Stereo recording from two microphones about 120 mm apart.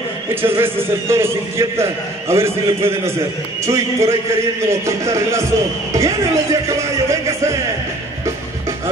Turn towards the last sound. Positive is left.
turn(degrees=-25)  # may be behind; listen again after turning